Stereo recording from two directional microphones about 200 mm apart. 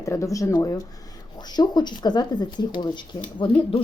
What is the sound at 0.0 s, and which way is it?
A woman's voice, 15° left (ahead or behind).